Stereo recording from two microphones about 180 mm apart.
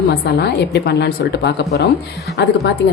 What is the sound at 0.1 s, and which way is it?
A woman's voice, 60° left (ahead or behind).